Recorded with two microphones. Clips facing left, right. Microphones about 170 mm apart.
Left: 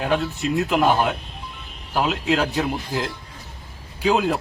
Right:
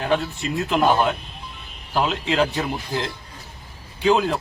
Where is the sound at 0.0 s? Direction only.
Centre (ahead or behind).